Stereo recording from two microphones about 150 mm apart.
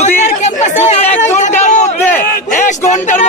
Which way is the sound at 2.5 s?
55° left (ahead or behind).